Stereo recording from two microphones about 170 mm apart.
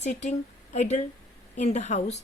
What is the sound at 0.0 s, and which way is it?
A woman's voice, 45° left (ahead or behind).